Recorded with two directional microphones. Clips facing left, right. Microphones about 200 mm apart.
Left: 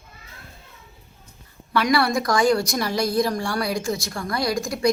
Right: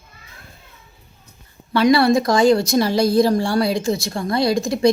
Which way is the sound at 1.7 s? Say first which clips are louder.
Right 6 dB; 25° right (ahead or behind).